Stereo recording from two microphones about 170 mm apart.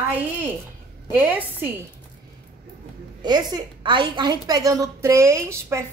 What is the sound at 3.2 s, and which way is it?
A woman's voice, 25° right (ahead or behind).